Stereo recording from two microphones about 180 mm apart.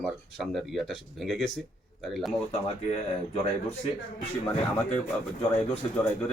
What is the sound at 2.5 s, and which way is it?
Speech, 35° left (ahead or behind).